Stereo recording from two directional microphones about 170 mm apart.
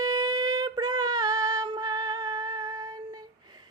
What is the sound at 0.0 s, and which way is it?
Female singing, 20° right (ahead or behind).